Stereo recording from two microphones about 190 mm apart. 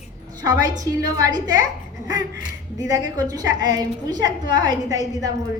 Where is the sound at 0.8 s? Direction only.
20° right (ahead or behind).